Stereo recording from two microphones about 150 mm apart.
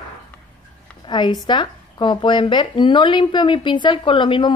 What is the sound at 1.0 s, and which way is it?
Speech, 30° left (ahead or behind).